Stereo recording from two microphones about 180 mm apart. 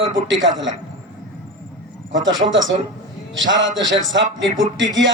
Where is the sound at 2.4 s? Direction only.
90° right.